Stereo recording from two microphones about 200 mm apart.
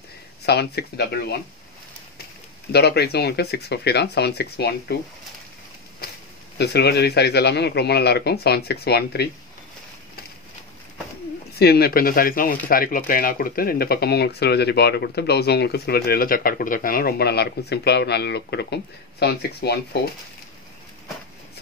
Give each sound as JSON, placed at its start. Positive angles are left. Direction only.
{"t": 0.5, "sound": "speech", "side_deg": 55}
{"t": 2.7, "sound": "speech", "side_deg": 55}
{"t": 6.6, "sound": "speech", "side_deg": 55}
{"t": 11.5, "sound": "speech", "side_deg": 50}